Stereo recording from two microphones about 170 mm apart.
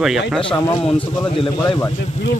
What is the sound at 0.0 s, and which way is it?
Speech, centre (ahead or behind).